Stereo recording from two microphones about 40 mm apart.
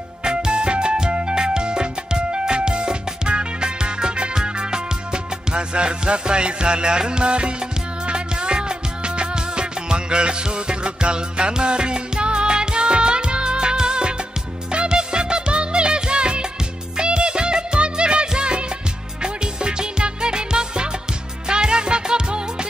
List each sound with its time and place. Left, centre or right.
0.2 s music: right